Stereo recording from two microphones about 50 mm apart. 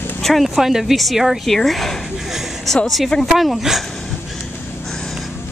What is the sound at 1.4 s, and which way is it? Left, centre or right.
Speech, centre.